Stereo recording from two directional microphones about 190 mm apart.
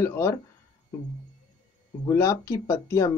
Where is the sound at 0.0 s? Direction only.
15° left (ahead or behind).